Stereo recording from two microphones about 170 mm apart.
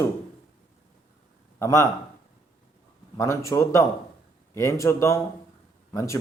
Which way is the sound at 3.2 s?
15° left (ahead or behind).